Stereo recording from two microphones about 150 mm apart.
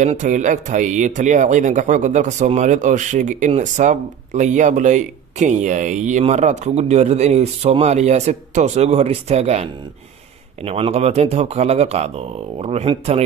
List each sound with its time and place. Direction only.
0.0 s speech: 55° right (ahead or behind)